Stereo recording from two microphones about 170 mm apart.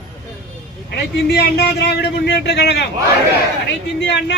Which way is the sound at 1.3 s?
75° left (ahead or behind).